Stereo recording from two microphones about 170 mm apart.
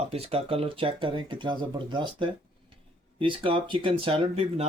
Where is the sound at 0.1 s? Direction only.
35° right (ahead or behind).